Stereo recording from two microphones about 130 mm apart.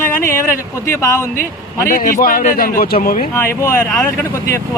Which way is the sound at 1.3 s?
90° left.